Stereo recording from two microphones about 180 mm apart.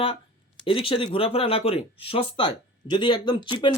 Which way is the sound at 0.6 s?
30° left (ahead or behind).